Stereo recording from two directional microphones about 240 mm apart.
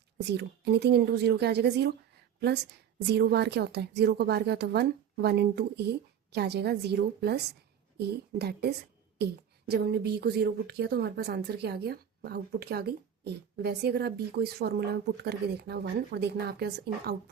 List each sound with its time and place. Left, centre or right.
0.3 s a woman's voice: right
3.1 s a woman's voice: right